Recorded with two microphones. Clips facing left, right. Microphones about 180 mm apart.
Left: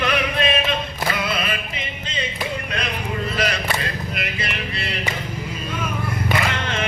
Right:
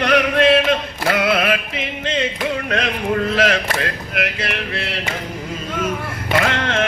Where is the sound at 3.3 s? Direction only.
80° right.